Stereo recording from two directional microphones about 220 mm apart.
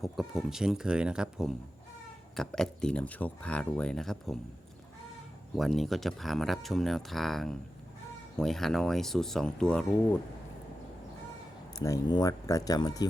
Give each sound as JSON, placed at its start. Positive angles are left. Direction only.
{"t": 0.0, "sound": "speech", "side_deg": 0}
{"t": 5.5, "sound": "speech", "side_deg": 0}
{"t": 11.7, "sound": "speech", "side_deg": 15}